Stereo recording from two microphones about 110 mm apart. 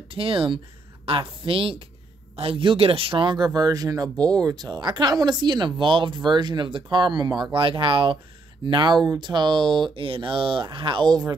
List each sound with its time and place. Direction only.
0.1 s a woman's voice: 55° right (ahead or behind)